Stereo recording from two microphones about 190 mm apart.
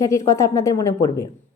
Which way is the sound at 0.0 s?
15° left (ahead or behind).